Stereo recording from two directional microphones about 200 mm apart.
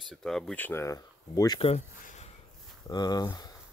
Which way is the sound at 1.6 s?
35° left (ahead or behind).